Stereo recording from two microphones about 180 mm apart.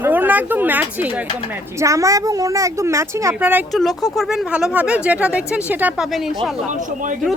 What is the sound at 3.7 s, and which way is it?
Speech, centre (ahead or behind).